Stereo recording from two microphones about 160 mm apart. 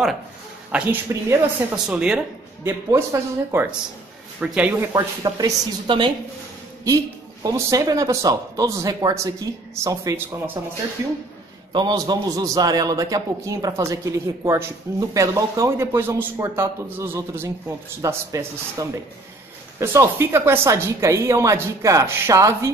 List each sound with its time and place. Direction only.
0.7 s speech: 5° right (ahead or behind)
1.1 s a woman's voice: 15° right (ahead or behind)
1.9 s speech: 5° right (ahead or behind)
2.6 s a woman's voice: 15° right (ahead or behind)
7.4 s a man's voice: 20° right (ahead or behind)
11.7 s a man's voice: 25° right (ahead or behind)